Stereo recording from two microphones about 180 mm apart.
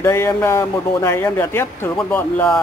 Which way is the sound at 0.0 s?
15° left (ahead or behind).